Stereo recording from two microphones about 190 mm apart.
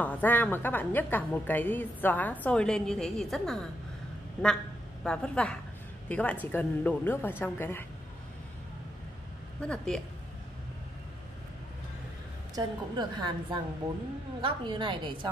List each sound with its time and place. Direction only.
0.0 s a woman's voice: 10° left (ahead or behind)
9.6 s a woman's voice: 5° left (ahead or behind)
12.5 s a woman's voice: 20° right (ahead or behind)